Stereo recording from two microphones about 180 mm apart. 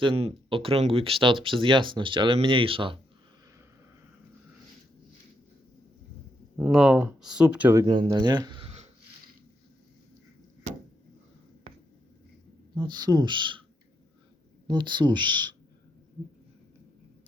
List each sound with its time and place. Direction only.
0.0 s speech: 30° right (ahead or behind)
6.7 s speech: centre (ahead or behind)
7.9 s speech: 25° right (ahead or behind)
12.7 s speech: 25° right (ahead or behind)
14.7 s speech: 25° right (ahead or behind)